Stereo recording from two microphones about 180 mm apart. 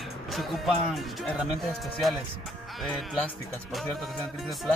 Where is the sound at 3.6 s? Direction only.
Centre (ahead or behind).